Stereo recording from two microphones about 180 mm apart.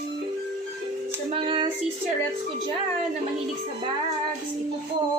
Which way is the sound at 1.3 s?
30° right (ahead or behind).